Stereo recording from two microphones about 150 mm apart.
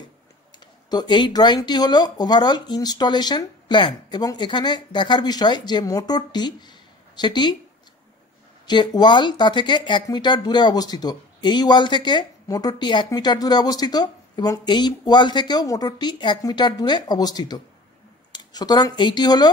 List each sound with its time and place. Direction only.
0.8 s speech: 30° left (ahead or behind)
8.6 s speech: 30° left (ahead or behind)